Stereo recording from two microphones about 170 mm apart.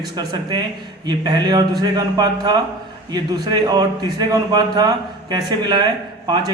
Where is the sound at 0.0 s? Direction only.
25° right (ahead or behind).